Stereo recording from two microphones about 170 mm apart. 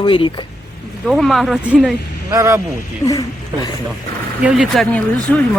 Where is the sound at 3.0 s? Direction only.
20° left (ahead or behind).